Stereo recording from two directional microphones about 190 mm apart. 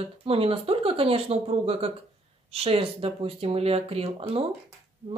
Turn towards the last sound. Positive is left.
turn(degrees=-30)  # may be behind; listen again after turning